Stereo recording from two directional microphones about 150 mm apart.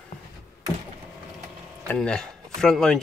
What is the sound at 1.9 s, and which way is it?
Speech, 5° left (ahead or behind).